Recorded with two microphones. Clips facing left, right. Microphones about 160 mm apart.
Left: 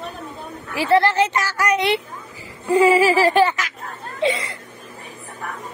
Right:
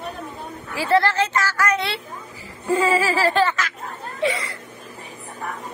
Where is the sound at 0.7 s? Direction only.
15° left (ahead or behind).